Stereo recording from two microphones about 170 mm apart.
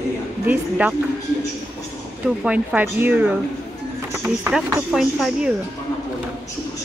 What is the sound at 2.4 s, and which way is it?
Speech, 10° right (ahead or behind).